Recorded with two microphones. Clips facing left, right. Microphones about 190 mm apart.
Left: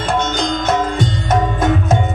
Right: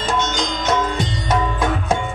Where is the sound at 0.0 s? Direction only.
55° left (ahead or behind).